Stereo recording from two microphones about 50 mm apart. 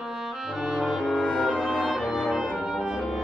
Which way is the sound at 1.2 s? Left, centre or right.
Left.